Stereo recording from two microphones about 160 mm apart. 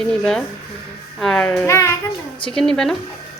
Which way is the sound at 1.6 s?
15° left (ahead or behind).